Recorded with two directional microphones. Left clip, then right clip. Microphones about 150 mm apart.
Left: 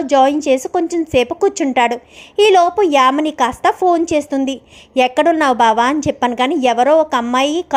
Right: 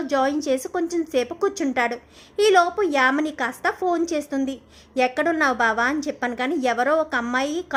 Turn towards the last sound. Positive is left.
turn(degrees=25)  # may be behind; listen again after turning